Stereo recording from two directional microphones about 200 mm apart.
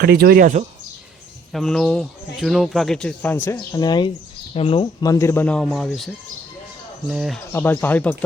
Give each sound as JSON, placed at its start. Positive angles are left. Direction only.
{"t": 0.0, "sound": "speech", "side_deg": -50}
{"t": 1.5, "sound": "speech", "side_deg": 0}
{"t": 7.1, "sound": "speech", "side_deg": 0}
{"t": 7.5, "sound": "speech", "side_deg": 10}